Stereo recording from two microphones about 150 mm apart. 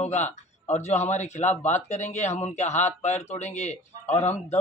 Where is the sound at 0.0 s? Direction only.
50° left (ahead or behind).